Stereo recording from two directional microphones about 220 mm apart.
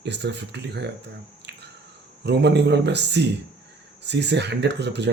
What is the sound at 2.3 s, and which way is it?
Speech, 50° right (ahead or behind).